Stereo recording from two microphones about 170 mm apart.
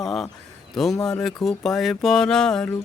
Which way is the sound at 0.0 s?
Centre (ahead or behind).